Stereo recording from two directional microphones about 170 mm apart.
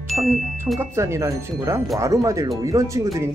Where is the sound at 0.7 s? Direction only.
15° right (ahead or behind).